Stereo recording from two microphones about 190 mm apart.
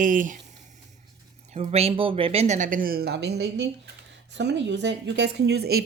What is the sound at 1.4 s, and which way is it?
Speech, 35° right (ahead or behind).